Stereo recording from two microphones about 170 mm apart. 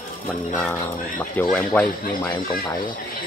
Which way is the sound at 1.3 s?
5° left (ahead or behind).